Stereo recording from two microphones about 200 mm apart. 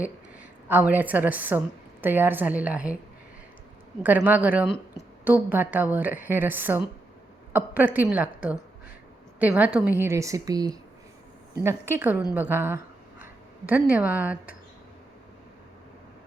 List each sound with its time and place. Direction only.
0.7 s a woman's voice: 10° right (ahead or behind)
4.0 s a woman's voice: 10° right (ahead or behind)